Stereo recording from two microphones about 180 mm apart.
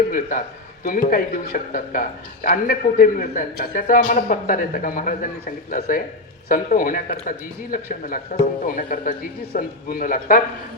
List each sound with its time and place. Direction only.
0.1 s speech: 50° left (ahead or behind)